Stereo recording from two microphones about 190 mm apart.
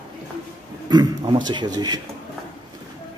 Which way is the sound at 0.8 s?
25° right (ahead or behind).